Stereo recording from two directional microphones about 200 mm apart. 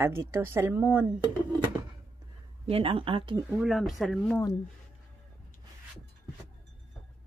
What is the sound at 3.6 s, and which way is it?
Speech, centre (ahead or behind).